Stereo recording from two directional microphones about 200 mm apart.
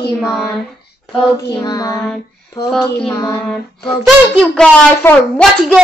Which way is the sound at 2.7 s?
5° left (ahead or behind).